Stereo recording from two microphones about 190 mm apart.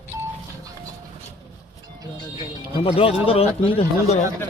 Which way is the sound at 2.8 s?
30° left (ahead or behind).